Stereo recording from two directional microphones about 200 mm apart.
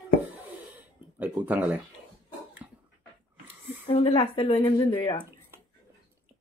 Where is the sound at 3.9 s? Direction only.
30° left (ahead or behind).